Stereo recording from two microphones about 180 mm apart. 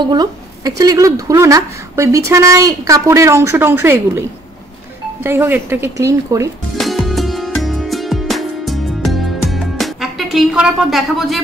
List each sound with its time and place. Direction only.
0.0 s a woman's voice: 25° right (ahead or behind)
5.2 s a woman's voice: 10° right (ahead or behind)
6.8 s music: centre (ahead or behind)